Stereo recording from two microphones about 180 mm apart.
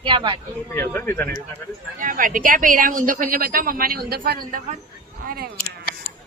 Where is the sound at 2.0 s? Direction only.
50° right (ahead or behind).